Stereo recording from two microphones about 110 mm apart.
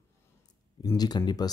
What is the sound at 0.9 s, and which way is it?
Speech, 40° left (ahead or behind).